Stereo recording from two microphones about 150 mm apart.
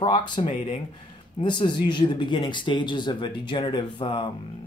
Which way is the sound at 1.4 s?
30° left (ahead or behind).